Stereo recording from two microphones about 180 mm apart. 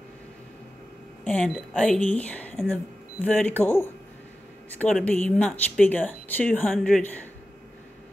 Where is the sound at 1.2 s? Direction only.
5° left (ahead or behind).